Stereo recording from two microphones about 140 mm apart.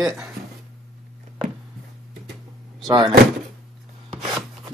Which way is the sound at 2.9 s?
30° right (ahead or behind).